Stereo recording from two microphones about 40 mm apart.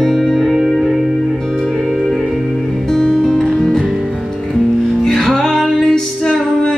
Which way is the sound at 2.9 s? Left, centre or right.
Centre.